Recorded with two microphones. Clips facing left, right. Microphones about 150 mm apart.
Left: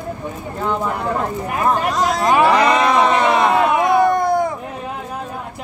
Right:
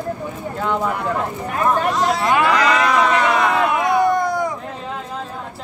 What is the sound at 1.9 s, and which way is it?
Speech, 40° left (ahead or behind).